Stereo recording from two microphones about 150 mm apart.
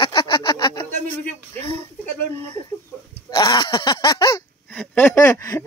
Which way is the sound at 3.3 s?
25° left (ahead or behind).